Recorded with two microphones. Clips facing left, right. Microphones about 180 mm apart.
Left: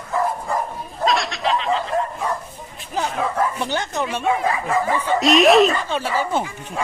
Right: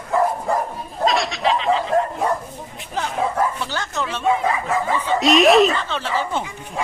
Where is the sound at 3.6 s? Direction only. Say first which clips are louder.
Left 3 dB; 20° left (ahead or behind).